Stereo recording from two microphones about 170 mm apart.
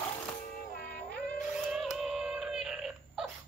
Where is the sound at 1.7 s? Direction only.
Centre (ahead or behind).